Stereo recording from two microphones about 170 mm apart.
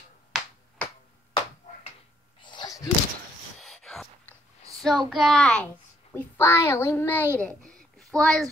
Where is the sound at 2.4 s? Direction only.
25° left (ahead or behind).